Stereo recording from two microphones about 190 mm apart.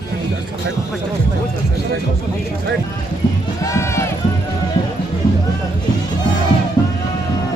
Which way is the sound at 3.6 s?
15° left (ahead or behind).